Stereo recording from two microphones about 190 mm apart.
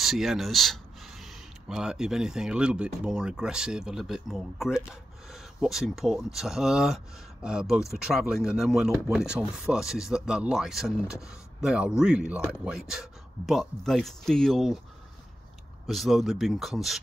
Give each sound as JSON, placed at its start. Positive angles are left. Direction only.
{"t": 0.0, "sound": "speech", "side_deg": 0}
{"t": 15.9, "sound": "speech", "side_deg": 0}